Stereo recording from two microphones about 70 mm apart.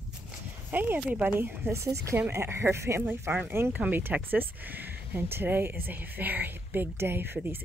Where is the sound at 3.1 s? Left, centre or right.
Right.